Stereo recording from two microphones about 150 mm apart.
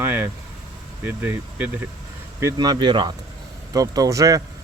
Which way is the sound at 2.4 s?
25° right (ahead or behind).